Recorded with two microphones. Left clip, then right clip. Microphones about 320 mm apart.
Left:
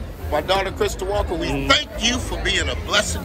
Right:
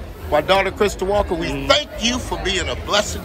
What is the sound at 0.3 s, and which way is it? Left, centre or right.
A man's voice, right.